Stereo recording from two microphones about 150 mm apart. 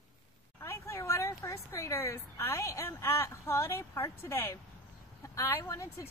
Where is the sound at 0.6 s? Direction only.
15° left (ahead or behind).